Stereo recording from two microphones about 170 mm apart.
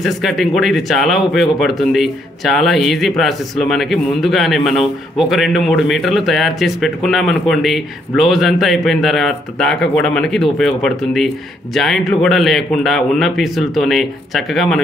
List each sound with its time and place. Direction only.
0.0 s speech: centre (ahead or behind)